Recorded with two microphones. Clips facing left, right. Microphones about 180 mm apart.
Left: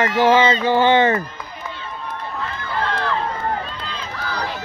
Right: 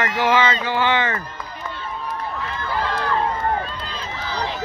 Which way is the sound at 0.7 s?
45° left (ahead or behind).